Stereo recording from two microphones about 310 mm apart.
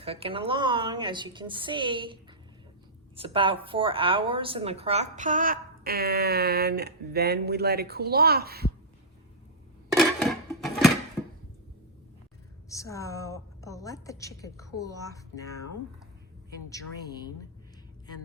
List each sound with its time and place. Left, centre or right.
0.0 s a woman's voice: centre
3.2 s a woman's voice: centre
10.0 s a sound: centre
12.6 s a woman's voice: centre
16.6 s a woman's voice: centre